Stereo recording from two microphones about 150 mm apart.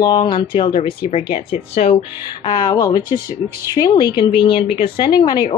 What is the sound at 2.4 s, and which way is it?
A woman's voice, 25° left (ahead or behind).